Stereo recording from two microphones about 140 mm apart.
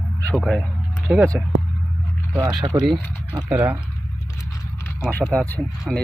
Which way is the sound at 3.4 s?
10° right (ahead or behind).